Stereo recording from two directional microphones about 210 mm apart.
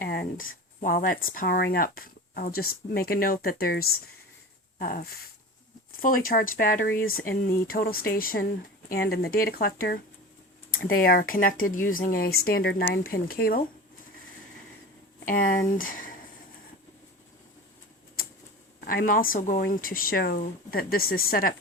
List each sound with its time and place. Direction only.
0.0 s a sound: 45° left (ahead or behind)
0.8 s speech: 40° left (ahead or behind)
6.0 s speech: 40° left (ahead or behind)
15.2 s speech: 40° left (ahead or behind)
18.9 s speech: 40° left (ahead or behind)